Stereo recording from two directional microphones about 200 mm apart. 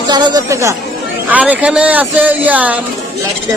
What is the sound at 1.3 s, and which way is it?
Speech, 5° right (ahead or behind).